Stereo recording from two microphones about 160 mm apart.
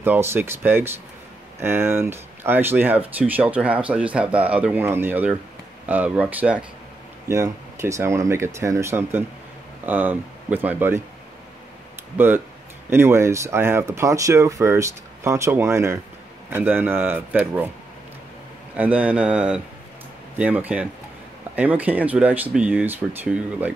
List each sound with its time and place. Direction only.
0.0 s speech: 15° right (ahead or behind)
12.9 s speech: 15° right (ahead or behind)
18.8 s speech: 10° right (ahead or behind)